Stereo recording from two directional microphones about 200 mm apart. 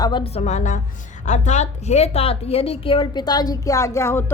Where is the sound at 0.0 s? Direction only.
25° left (ahead or behind).